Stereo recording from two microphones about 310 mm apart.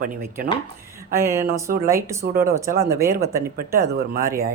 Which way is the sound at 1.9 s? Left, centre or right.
Centre.